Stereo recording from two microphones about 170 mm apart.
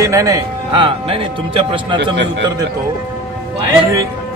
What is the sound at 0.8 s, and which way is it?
Speech, 35° right (ahead or behind).